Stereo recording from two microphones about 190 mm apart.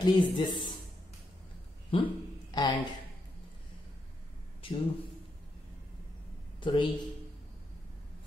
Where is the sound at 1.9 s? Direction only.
30° left (ahead or behind).